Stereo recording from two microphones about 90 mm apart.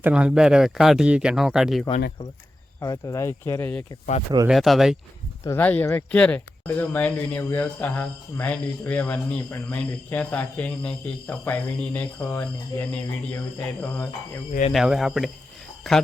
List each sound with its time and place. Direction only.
0.0 s speech: 10° right (ahead or behind)
2.8 s speech: 40° left (ahead or behind)
4.4 s speech: centre (ahead or behind)
5.4 s speech: 30° left (ahead or behind)
6.1 s speech: 10° left (ahead or behind)
6.7 s speech: 25° left (ahead or behind)
14.7 s speech: 5° right (ahead or behind)